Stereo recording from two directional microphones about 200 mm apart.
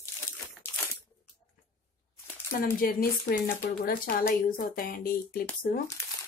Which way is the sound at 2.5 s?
45° left (ahead or behind).